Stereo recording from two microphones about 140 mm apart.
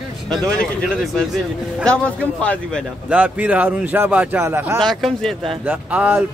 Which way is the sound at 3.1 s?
10° right (ahead or behind).